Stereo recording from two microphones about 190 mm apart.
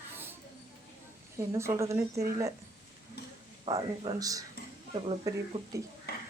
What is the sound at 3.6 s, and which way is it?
Speech, 20° right (ahead or behind).